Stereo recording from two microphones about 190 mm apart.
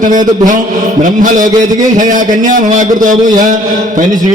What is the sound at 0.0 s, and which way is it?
Speech, 45° right (ahead or behind).